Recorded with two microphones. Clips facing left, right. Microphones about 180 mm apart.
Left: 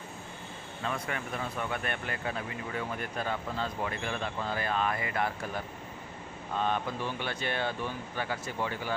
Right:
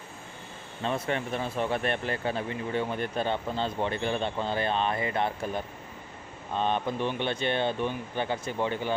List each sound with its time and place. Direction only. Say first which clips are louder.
0.9 s speech: right 6 dB; 25° right (ahead or behind)